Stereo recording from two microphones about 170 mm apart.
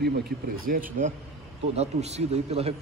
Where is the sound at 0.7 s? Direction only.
55° right (ahead or behind).